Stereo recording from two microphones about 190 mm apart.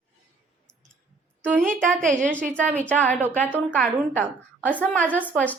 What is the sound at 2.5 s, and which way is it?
A woman's voice, 5° left (ahead or behind).